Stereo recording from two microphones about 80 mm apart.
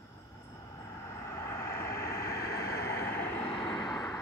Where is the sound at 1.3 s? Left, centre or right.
Left.